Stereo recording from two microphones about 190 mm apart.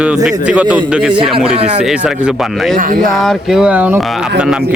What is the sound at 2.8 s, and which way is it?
Speech, 45° right (ahead or behind).